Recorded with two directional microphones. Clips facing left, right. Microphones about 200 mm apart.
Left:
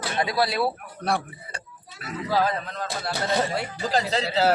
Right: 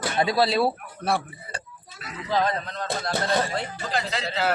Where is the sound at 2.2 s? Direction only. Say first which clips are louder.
Even; 5° left (ahead or behind).